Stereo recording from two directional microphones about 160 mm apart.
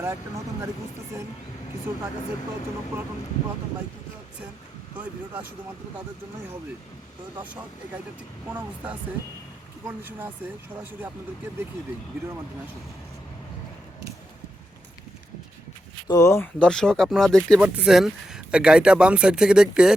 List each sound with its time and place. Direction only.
0.0 s speech: 15° right (ahead or behind)
2.9 s speech: 15° right (ahead or behind)
4.9 s speech: 10° right (ahead or behind)
9.8 s speech: 10° right (ahead or behind)
16.0 s speech: 20° left (ahead or behind); by 19.9 s 5° right (ahead or behind)